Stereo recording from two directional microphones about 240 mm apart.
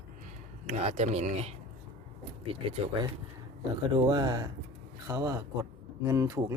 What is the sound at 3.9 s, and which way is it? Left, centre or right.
Speech, centre.